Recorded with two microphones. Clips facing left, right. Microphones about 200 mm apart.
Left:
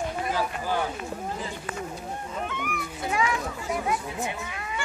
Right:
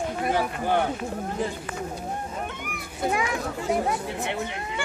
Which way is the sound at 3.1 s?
50° right (ahead or behind).